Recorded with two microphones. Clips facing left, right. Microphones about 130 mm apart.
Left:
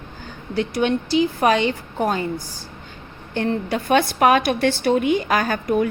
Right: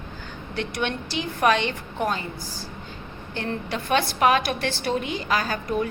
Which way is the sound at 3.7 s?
45° left (ahead or behind).